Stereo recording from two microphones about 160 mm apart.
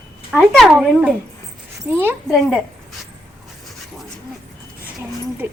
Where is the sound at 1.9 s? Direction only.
15° right (ahead or behind).